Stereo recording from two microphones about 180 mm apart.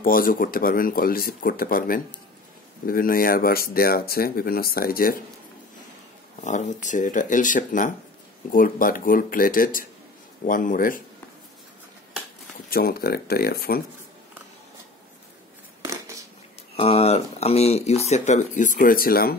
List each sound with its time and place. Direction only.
0.0 s speech: 50° left (ahead or behind)
6.4 s speech: 40° left (ahead or behind)
12.6 s speech: 55° left (ahead or behind)
15.8 s a sound: 15° right (ahead or behind)
16.7 s speech: 35° left (ahead or behind); by 19.3 s 55° left (ahead or behind)